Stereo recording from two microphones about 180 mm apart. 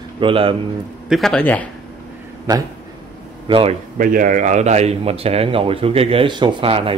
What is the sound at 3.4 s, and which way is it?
Speech, 30° right (ahead or behind).